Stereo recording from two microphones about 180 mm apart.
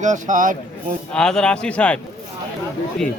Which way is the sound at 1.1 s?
5° left (ahead or behind).